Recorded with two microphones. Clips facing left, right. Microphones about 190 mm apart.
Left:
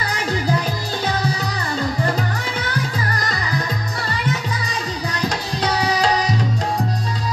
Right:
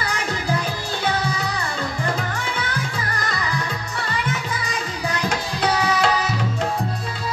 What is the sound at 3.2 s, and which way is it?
Music, 35° left (ahead or behind).